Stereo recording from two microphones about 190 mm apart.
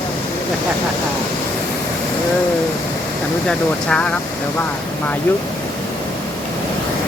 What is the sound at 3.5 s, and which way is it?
Speech, 5° left (ahead or behind).